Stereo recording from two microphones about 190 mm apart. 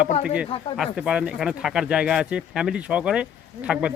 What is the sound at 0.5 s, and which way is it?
Speech, 30° left (ahead or behind).